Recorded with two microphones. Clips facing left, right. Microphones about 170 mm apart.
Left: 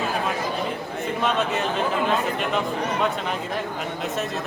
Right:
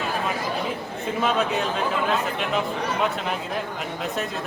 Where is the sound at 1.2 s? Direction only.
Centre (ahead or behind).